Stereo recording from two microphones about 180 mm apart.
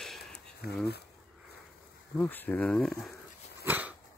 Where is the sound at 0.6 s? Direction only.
60° left (ahead or behind).